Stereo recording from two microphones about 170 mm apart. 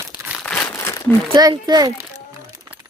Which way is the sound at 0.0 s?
15° right (ahead or behind).